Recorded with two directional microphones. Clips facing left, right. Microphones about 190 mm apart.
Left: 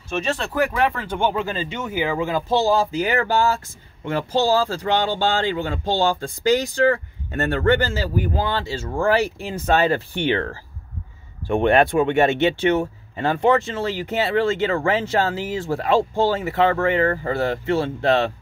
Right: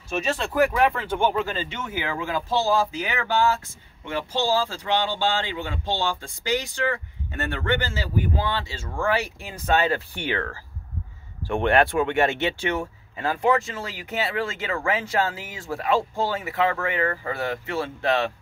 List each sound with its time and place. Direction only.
0.1 s speech: 5° right (ahead or behind)
1.4 s speech: 15° left (ahead or behind)
3.0 s speech: 40° left (ahead or behind)
11.4 s speech: 20° left (ahead or behind)